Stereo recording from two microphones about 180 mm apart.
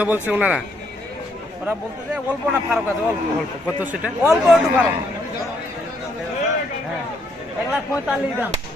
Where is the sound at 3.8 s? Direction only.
10° right (ahead or behind).